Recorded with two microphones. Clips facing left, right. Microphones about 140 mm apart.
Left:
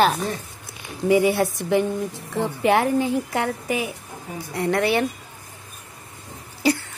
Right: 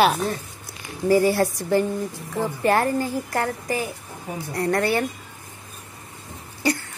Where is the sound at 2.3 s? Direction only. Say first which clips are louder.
Left 1 dB; centre (ahead or behind).